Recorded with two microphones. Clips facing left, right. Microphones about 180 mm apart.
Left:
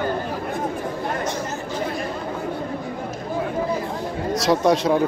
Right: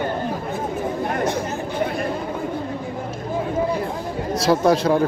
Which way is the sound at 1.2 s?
60° right (ahead or behind).